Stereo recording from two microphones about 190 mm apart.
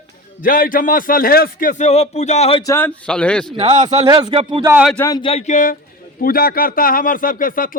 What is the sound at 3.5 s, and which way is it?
Speech, 30° right (ahead or behind).